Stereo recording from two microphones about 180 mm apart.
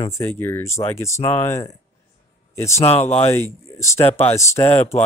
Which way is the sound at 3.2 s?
15° left (ahead or behind).